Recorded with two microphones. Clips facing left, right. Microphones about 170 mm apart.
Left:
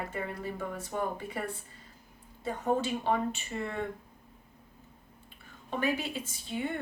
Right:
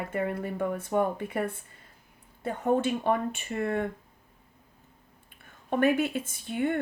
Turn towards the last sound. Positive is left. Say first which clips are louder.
# right 6 dB
turn(degrees=-55)  # may be behind; listen again after turning